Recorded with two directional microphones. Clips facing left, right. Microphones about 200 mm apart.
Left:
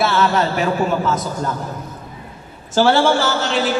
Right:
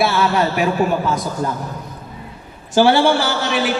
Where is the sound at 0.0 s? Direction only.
10° right (ahead or behind).